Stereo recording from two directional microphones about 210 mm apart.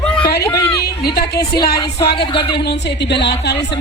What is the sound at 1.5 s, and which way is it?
Speech, 50° left (ahead or behind).